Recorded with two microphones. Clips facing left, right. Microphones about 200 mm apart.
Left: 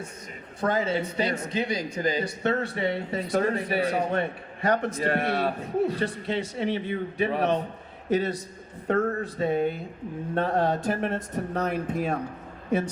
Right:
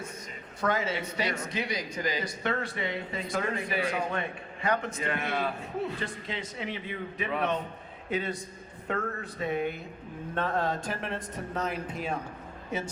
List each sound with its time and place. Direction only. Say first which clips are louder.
0.6 s speech: left 4 dB; 25° left (ahead or behind)
8.9 s speech: left 8 dB; 40° left (ahead or behind)
11.5 s speech: left 5 dB; 60° left (ahead or behind)